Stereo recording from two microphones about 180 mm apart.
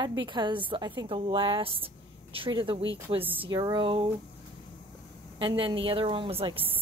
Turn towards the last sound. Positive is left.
turn(degrees=-30)  # may be behind; listen again after turning